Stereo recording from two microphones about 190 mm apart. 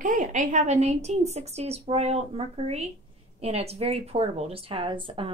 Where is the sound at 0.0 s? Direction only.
40° right (ahead or behind).